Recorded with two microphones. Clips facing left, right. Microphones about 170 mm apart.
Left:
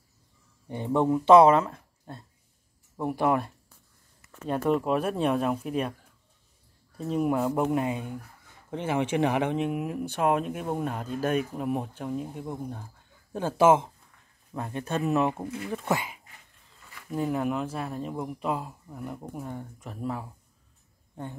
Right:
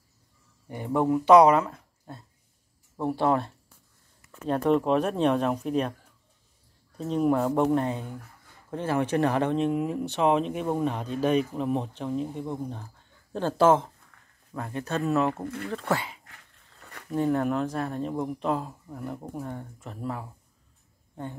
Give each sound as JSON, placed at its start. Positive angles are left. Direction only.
{"t": 0.8, "sound": "speech", "side_deg": -10}
{"t": 1.2, "sound": "speech", "side_deg": 25}
{"t": 1.6, "sound": "a sound", "side_deg": -15}
{"t": 3.3, "sound": "speech", "side_deg": 10}
{"t": 7.0, "sound": "speech", "side_deg": 5}